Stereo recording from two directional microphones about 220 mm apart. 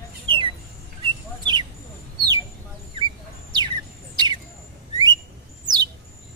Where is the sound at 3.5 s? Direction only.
20° right (ahead or behind).